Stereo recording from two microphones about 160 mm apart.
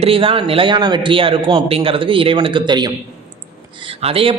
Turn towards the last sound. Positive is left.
turn(degrees=-35)  # may be behind; listen again after turning